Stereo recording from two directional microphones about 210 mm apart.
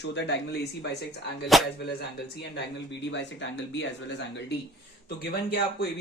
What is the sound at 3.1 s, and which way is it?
Speech, 60° left (ahead or behind).